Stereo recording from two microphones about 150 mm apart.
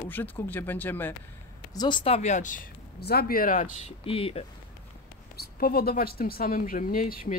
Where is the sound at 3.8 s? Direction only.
40° left (ahead or behind).